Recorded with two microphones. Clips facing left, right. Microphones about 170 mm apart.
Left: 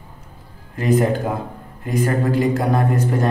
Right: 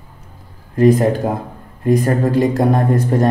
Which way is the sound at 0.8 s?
35° right (ahead or behind).